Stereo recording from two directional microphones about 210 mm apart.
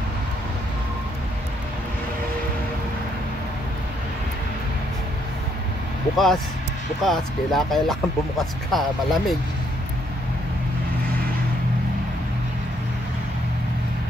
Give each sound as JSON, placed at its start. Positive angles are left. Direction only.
{"t": 6.1, "sound": "speech", "side_deg": 0}